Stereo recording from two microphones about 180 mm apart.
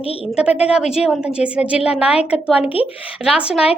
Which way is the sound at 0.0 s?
30° left (ahead or behind).